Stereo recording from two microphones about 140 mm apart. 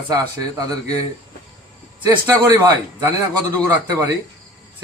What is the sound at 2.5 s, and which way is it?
Speech, 20° right (ahead or behind).